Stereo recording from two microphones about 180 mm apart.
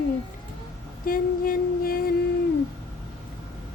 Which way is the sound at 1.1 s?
50° left (ahead or behind).